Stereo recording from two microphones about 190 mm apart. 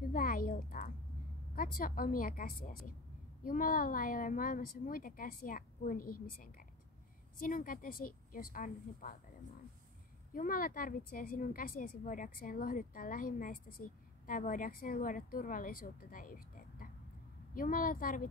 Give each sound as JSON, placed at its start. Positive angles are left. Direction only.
{"t": 0.0, "sound": "a woman's voice", "side_deg": 50}
{"t": 10.3, "sound": "a woman's voice", "side_deg": 45}